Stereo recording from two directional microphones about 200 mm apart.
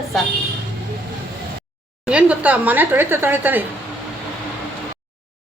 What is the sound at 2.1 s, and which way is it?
Speech, 5° right (ahead or behind).